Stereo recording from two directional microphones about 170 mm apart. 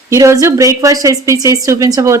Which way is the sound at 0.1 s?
15° right (ahead or behind).